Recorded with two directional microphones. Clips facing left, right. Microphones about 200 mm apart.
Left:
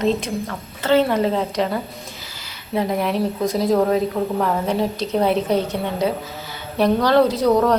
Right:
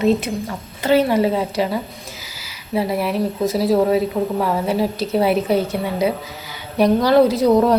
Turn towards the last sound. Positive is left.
turn(degrees=-10)  # may be behind; listen again after turning